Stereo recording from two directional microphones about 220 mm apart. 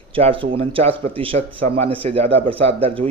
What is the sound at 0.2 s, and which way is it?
Speech, 25° right (ahead or behind).